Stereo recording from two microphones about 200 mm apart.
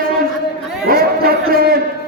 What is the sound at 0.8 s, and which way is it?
Chatter, 50° right (ahead or behind).